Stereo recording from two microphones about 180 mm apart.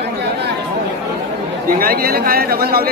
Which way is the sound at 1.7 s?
55° right (ahead or behind).